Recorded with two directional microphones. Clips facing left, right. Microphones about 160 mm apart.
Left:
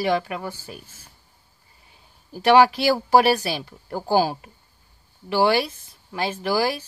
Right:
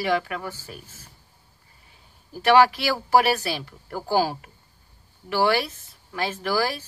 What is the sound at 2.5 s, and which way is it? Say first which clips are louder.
Speech: left 2 dB; 20° left (ahead or behind).